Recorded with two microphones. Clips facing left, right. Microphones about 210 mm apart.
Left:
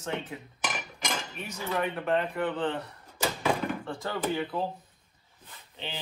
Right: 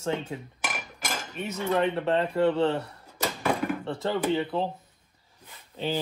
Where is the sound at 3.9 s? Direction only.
25° right (ahead or behind).